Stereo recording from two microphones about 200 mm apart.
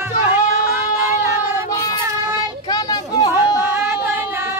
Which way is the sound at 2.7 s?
20° left (ahead or behind).